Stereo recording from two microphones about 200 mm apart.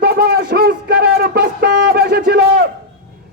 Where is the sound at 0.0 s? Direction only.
50° right (ahead or behind).